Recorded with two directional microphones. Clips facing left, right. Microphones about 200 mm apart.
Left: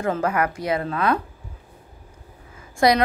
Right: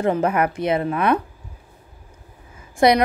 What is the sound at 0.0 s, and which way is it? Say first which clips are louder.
A woman's voice: right 3 dB; 20° right (ahead or behind).